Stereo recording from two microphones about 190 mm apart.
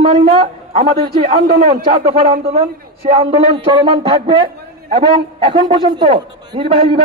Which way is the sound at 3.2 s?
25° right (ahead or behind).